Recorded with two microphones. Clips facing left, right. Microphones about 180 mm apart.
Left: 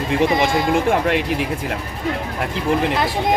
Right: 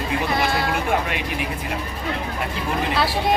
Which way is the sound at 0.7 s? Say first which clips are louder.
Left 6 dB; 75° left (ahead or behind).